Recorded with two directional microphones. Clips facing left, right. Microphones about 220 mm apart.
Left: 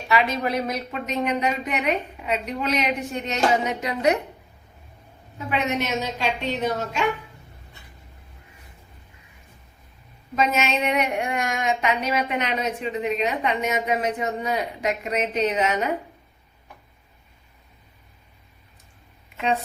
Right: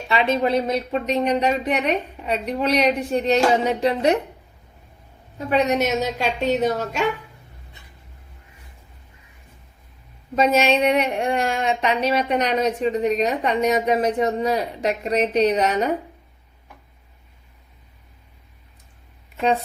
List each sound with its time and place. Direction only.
0.1 s speech: 25° right (ahead or behind)
5.5 s speech: 40° right (ahead or behind)
10.3 s speech: 35° right (ahead or behind)